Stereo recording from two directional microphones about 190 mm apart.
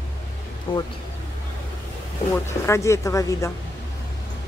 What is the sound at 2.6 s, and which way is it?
Speech, 15° left (ahead or behind).